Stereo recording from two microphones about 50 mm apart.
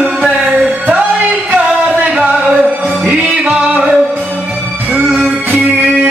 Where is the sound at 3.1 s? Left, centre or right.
Right.